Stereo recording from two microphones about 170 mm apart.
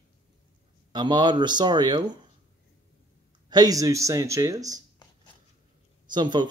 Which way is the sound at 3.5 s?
20° right (ahead or behind).